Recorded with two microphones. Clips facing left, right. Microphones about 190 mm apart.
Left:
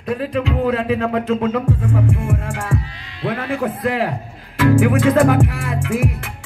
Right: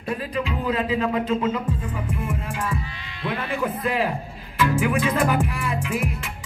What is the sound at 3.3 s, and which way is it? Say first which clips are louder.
Music: left 5 dB; 70° left (ahead or behind).